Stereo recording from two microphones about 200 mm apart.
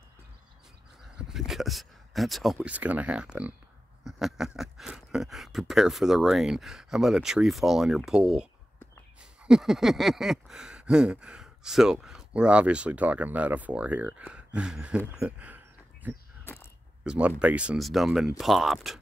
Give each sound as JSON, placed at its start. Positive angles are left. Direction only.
{"t": 1.1, "sound": "speech", "side_deg": 0}
{"t": 9.2, "sound": "a sound", "side_deg": -5}
{"t": 17.0, "sound": "speech", "side_deg": -5}